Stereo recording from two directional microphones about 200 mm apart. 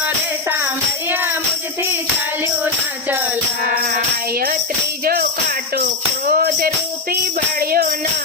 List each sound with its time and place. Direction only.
0.0 s music: 10° right (ahead or behind)
3.1 s music: 10° right (ahead or behind)
5.0 s music: 50° right (ahead or behind)